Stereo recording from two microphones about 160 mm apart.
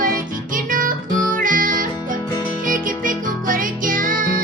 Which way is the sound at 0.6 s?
60° right (ahead or behind).